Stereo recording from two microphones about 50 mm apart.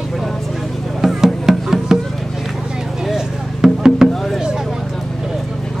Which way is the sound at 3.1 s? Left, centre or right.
Centre.